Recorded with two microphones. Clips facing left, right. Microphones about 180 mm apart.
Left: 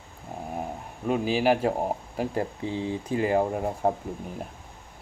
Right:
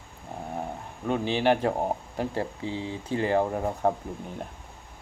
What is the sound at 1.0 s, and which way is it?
Speech, 5° left (ahead or behind).